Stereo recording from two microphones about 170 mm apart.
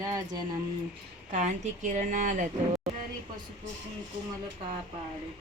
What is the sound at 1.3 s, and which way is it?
Speech, 45° right (ahead or behind).